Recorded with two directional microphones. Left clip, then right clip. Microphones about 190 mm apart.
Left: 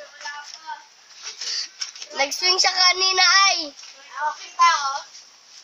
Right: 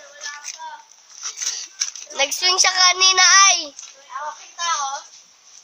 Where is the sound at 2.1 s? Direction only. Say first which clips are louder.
Right 2 dB; 20° right (ahead or behind).